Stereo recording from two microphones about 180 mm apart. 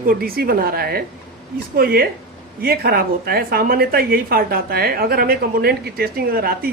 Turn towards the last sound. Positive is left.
turn(degrees=-55)  # may be behind; listen again after turning